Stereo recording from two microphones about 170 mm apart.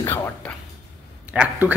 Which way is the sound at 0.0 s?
15° left (ahead or behind).